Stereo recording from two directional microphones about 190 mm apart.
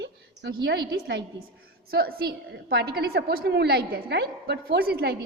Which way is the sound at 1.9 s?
55° right (ahead or behind).